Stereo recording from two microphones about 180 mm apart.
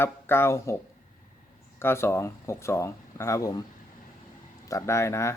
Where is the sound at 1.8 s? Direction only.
15° left (ahead or behind).